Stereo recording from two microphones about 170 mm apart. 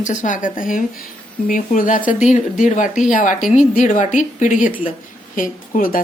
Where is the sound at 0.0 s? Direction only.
45° left (ahead or behind).